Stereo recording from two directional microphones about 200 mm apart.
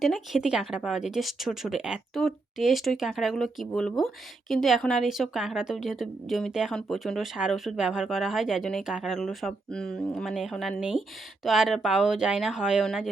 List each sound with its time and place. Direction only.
0.0 s speech: centre (ahead or behind)